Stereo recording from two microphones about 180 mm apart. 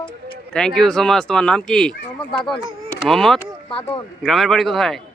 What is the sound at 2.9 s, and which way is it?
Speech, centre (ahead or behind).